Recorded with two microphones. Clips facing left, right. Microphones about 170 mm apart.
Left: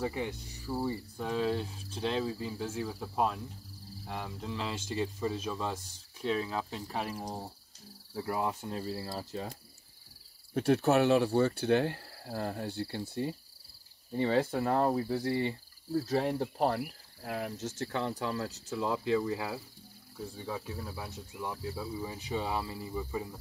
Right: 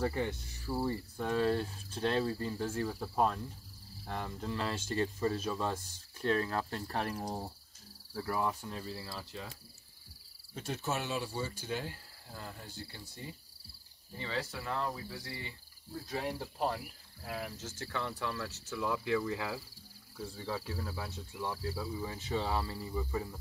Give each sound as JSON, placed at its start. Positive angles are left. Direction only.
{"t": 0.0, "sound": "speech", "side_deg": 5}
{"t": 8.1, "sound": "speech", "side_deg": 20}
{"t": 8.6, "sound": "speech", "side_deg": 35}
{"t": 10.5, "sound": "speech", "side_deg": 60}
{"t": 14.1, "sound": "cricket", "side_deg": 45}
{"t": 14.6, "sound": "speech", "side_deg": 40}
{"t": 15.2, "sound": "cricket", "side_deg": 55}
{"t": 15.9, "sound": "speech", "side_deg": 40}
{"t": 16.3, "sound": "cricket", "side_deg": 60}
{"t": 18.3, "sound": "speech", "side_deg": 30}
{"t": 20.2, "sound": "insect", "side_deg": 15}